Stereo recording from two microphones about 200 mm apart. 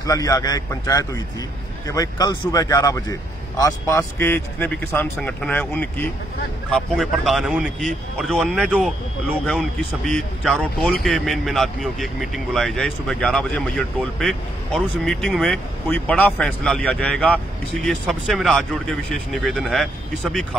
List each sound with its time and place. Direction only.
0.0 s speech: 15° left (ahead or behind); by 19.9 s centre (ahead or behind)